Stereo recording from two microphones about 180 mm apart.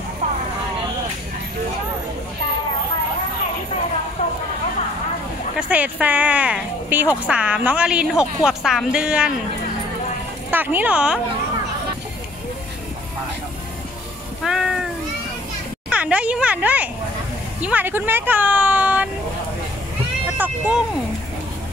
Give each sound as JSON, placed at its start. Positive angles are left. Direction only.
{"t": 4.2, "sound": "vehicle", "side_deg": 35}
{"t": 5.6, "sound": "a woman's voice", "side_deg": -10}
{"t": 10.5, "sound": "a woman's voice", "side_deg": -10}
{"t": 14.4, "sound": "cat", "side_deg": -5}
{"t": 15.9, "sound": "a sound", "side_deg": -5}
{"t": 17.6, "sound": "speech", "side_deg": -10}
{"t": 20.3, "sound": "vehicle", "side_deg": -10}